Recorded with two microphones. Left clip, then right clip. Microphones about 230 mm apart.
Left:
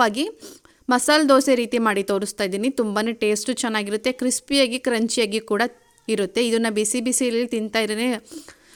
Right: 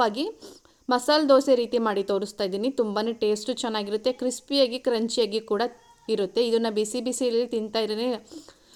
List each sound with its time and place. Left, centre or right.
0.2 s a woman's voice: left